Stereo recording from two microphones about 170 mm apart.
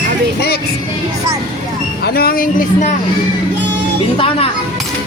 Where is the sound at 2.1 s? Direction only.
60° left (ahead or behind).